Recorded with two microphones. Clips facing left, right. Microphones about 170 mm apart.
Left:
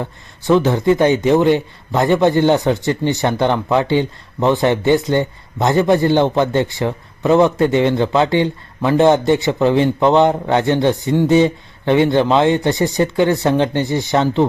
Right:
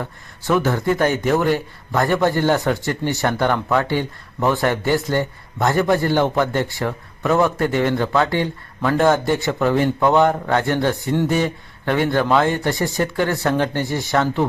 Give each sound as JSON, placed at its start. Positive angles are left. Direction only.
{"t": 0.0, "sound": "a man's voice", "side_deg": 20}